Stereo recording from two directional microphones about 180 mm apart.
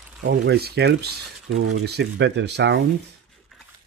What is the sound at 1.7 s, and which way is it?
Speech, 80° right.